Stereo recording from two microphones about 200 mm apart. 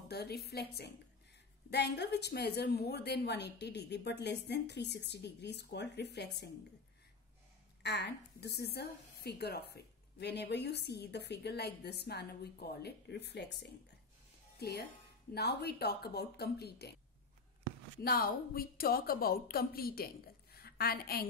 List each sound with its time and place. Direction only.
0.1 s a woman's voice: 55° left (ahead or behind)
7.8 s a woman's voice: 55° left (ahead or behind)
18.0 s a woman's voice: 50° left (ahead or behind)